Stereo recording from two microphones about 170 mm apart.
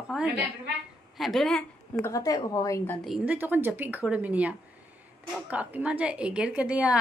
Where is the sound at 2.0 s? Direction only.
15° left (ahead or behind).